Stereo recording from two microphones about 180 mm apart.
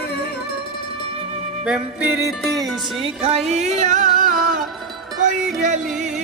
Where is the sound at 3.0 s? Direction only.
35° right (ahead or behind).